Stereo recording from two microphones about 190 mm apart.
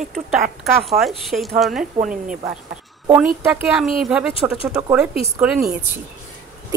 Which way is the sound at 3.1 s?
10° right (ahead or behind).